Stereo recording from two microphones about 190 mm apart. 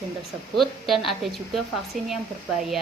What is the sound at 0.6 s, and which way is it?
Speech, centre (ahead or behind).